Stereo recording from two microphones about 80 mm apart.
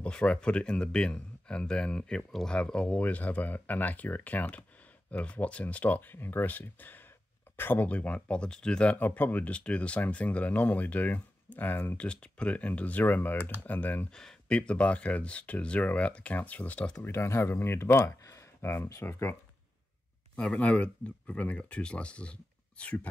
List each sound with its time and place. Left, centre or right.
0.0 s speech: centre
8.9 s speech: left
14.1 s speech: centre
17.0 s speech: left
18.6 s speech: left
20.3 s speech: centre